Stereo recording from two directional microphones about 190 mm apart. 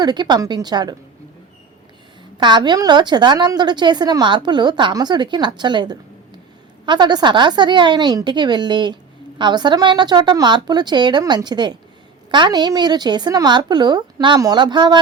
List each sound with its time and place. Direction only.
0.0 s a woman's voice: 20° right (ahead or behind)
2.4 s a woman's voice: 25° right (ahead or behind)